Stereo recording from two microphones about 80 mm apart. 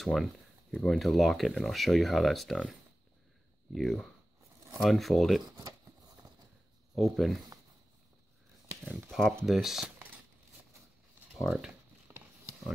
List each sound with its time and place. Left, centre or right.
0.0 s speech: centre
7.0 s speech: centre
9.5 s speech: centre
11.3 s speech: centre
12.1 s a sound: right